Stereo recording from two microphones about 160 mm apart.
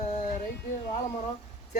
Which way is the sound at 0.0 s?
50° left (ahead or behind).